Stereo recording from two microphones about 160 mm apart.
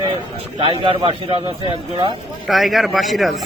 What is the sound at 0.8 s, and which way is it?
Speech, 35° right (ahead or behind).